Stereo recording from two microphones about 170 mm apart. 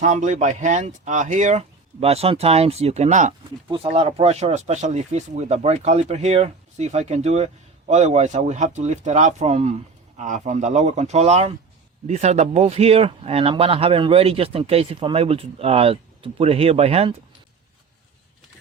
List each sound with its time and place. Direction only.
0.0 s speech: 45° right (ahead or behind)